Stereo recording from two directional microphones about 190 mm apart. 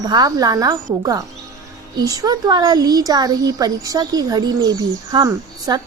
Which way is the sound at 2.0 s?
20° right (ahead or behind).